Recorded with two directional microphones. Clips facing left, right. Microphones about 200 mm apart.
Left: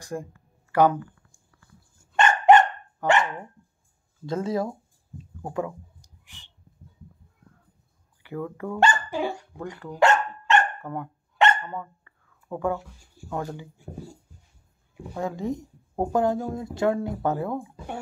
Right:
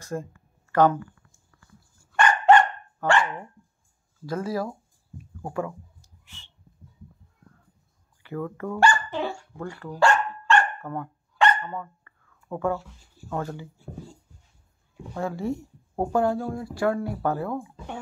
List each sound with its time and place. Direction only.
0.0 s a sound: 15° left (ahead or behind)
2.0 s dog: 25° left (ahead or behind)
4.3 s a sound: 25° left (ahead or behind)
5.5 s clicking: 15° left (ahead or behind)
8.2 s speech: 15° left (ahead or behind)
9.1 s dog: 15° left (ahead or behind)
11.6 s speech: 10° left (ahead or behind)
15.1 s speech: 20° left (ahead or behind)